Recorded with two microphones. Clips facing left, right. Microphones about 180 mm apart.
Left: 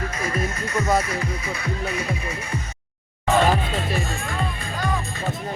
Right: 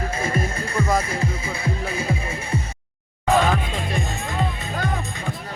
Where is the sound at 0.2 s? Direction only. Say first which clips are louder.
Right 1 dB; 30° right (ahead or behind).